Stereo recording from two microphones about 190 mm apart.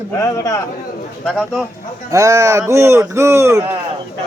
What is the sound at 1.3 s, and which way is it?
Speech, centre (ahead or behind).